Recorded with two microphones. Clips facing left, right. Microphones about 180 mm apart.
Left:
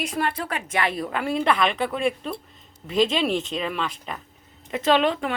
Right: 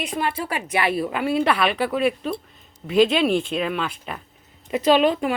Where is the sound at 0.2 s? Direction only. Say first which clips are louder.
Right 2 dB; 5° right (ahead or behind).